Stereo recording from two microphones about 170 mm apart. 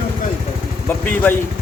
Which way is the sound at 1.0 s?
10° left (ahead or behind).